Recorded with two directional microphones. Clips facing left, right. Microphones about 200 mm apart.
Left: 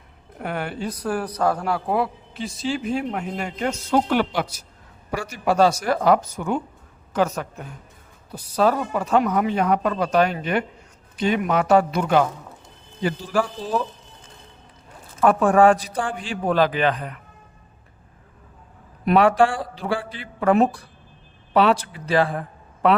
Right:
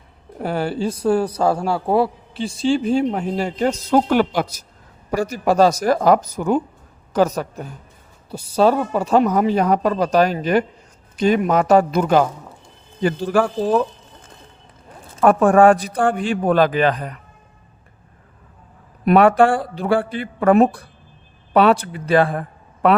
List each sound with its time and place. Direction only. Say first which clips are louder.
0.3 s a man's voice: right 6 dB; 30° right (ahead or behind)
13.0 s a man's voice: right 5 dB; 55° right (ahead or behind)
15.2 s a man's voice: right 3 dB; 50° right (ahead or behind)
19.0 s a man's voice: right 4 dB; 55° right (ahead or behind)